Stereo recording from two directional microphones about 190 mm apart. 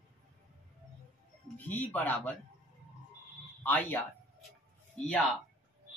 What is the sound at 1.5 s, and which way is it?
Speech, 10° left (ahead or behind).